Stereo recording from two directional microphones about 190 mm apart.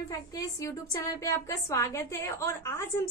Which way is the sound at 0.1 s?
15° left (ahead or behind).